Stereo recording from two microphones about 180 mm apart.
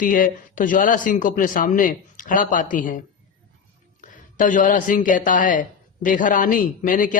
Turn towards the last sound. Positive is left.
turn(degrees=45)  # may be behind; listen again after turning